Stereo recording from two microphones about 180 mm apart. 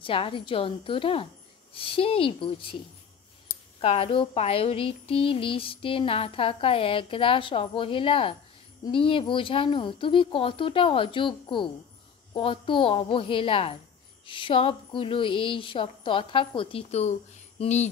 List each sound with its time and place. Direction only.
0.0 s a woman's voice: 30° left (ahead or behind)
3.8 s a woman's voice: 30° left (ahead or behind)